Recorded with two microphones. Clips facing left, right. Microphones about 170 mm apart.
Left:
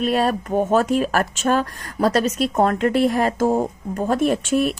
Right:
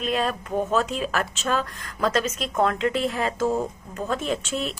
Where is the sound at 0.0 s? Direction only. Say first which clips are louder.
Left 6 dB; 45° left (ahead or behind).